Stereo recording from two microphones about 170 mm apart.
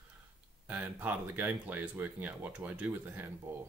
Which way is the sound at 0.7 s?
10° right (ahead or behind).